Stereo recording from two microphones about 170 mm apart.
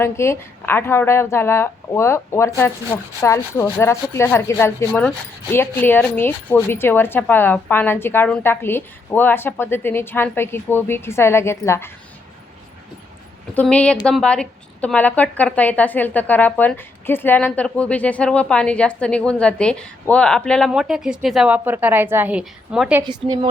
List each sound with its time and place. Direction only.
0.0 s a woman's voice: 15° left (ahead or behind)
13.5 s a woman's voice: 10° left (ahead or behind)
23.0 s a woman's voice: 30° right (ahead or behind)